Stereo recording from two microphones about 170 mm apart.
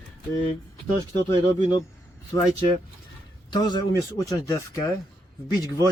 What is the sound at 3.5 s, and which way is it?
Speech, 25° left (ahead or behind).